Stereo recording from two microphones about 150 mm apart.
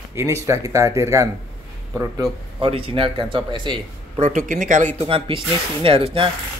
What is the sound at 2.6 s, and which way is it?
Speech, 35° right (ahead or behind).